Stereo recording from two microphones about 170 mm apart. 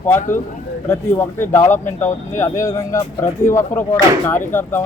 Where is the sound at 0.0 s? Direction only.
15° left (ahead or behind).